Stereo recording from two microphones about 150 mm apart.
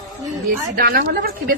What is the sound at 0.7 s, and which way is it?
Speech, 90° right.